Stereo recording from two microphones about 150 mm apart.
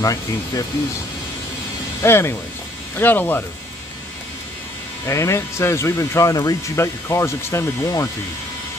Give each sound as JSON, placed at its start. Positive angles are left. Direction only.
{"t": 0.0, "sound": "speech", "side_deg": 25}
{"t": 2.0, "sound": "speech", "side_deg": 15}
{"t": 5.0, "sound": "speech", "side_deg": 20}